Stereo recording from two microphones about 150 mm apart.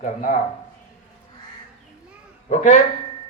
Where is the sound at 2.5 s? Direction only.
55° left (ahead or behind).